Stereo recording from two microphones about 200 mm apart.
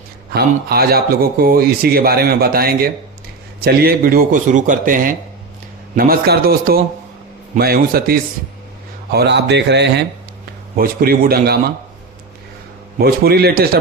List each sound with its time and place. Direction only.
0.3 s speech: 50° right (ahead or behind)
10.8 s speech: 45° right (ahead or behind)
13.0 s speech: 50° right (ahead or behind)